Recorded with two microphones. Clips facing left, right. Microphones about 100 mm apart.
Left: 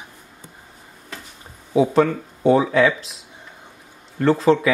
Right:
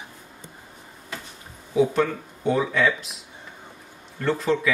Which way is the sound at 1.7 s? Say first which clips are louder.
Left 4 dB; 35° left (ahead or behind).